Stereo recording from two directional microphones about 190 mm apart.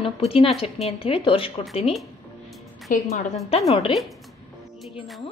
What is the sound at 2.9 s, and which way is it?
Speech, 40° left (ahead or behind).